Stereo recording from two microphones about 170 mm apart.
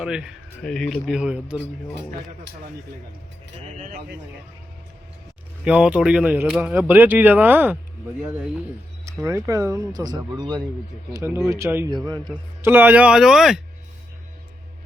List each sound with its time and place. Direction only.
0.0 s speech: 5° right (ahead or behind)
3.7 s speech: 45° right (ahead or behind)
5.6 s speech: 5° right (ahead or behind)
9.0 s speech: 15° right (ahead or behind)
12.3 s speech: 10° right (ahead or behind)